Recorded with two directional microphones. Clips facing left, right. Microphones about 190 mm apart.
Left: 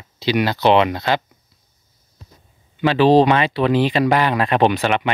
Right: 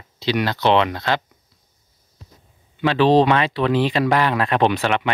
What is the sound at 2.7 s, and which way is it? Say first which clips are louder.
Speech: left 2 dB; 5° left (ahead or behind).